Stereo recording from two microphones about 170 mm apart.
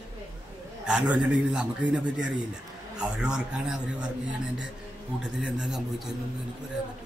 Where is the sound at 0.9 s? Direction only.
5° right (ahead or behind).